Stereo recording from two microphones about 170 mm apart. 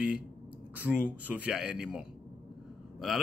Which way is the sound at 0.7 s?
10° right (ahead or behind).